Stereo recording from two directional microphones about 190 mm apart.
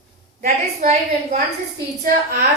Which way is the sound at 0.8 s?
40° right (ahead or behind).